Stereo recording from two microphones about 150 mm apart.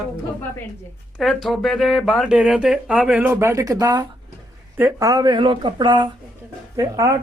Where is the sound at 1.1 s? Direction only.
Centre (ahead or behind).